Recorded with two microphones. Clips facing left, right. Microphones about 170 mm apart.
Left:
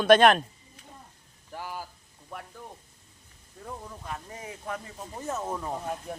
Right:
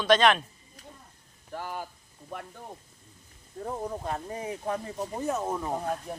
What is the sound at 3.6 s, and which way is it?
Speech, 45° right (ahead or behind).